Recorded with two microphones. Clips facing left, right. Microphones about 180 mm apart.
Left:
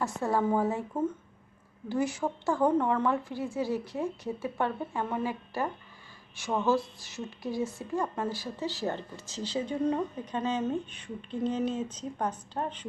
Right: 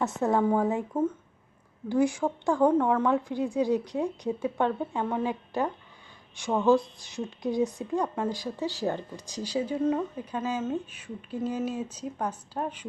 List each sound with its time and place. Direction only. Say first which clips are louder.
0.2 s a woman's voice: right 3 dB; 5° left (ahead or behind)
0.7 s speech: right 3 dB; 10° right (ahead or behind)
4.4 s a woman's voice: right 4 dB; 5° left (ahead or behind)
4.9 s speech: right 3 dB; 15° right (ahead or behind)